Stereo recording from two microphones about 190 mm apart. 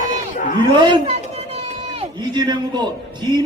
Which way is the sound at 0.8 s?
25° right (ahead or behind).